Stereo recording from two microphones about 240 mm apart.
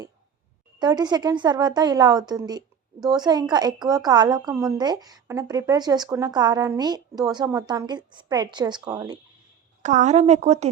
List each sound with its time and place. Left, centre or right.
0.8 s a woman's voice: centre
9.8 s speech: right